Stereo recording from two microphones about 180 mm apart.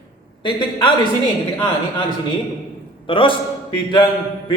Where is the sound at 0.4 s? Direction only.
25° left (ahead or behind).